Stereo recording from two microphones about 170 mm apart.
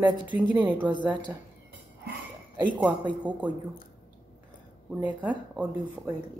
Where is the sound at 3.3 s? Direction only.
30° right (ahead or behind).